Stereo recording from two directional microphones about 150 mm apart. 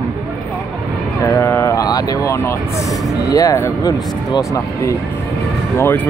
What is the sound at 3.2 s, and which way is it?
Speech, 20° left (ahead or behind).